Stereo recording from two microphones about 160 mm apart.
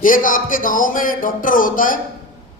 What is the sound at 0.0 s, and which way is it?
Speech, 60° left (ahead or behind).